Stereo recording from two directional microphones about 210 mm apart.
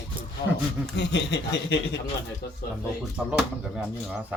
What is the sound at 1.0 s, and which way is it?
Speech, 55° left (ahead or behind).